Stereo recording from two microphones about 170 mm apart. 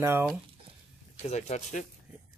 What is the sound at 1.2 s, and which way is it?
Speech, 40° left (ahead or behind).